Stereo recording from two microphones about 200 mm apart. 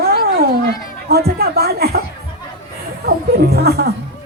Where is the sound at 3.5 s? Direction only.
55° right (ahead or behind).